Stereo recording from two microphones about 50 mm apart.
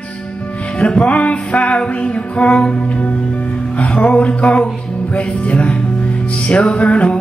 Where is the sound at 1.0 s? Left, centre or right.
Left.